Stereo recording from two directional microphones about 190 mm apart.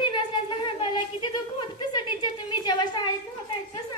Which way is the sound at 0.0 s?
25° left (ahead or behind).